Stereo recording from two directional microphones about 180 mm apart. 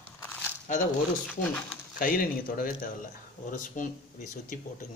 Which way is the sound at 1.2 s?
5° left (ahead or behind).